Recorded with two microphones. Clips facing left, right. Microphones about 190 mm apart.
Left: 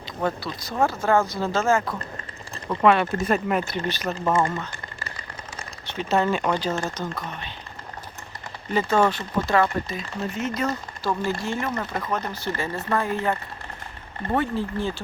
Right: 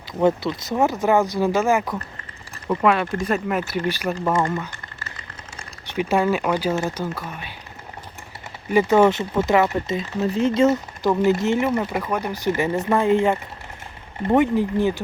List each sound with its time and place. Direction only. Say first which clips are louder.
0.2 s speech: right 8 dB; 20° right (ahead or behind)
2.6 s speech: even; centre (ahead or behind)
5.8 s speech: right 3 dB; 15° right (ahead or behind)
8.7 s speech: right 5 dB; 15° right (ahead or behind)